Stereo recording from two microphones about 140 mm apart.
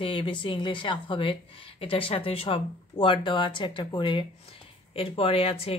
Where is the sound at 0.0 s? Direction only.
40° left (ahead or behind).